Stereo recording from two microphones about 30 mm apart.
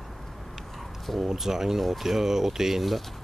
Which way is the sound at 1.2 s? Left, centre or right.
Centre.